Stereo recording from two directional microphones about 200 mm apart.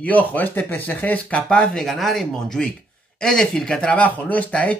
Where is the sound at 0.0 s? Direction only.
10° left (ahead or behind).